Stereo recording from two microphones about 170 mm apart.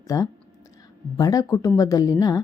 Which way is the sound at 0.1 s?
20° left (ahead or behind).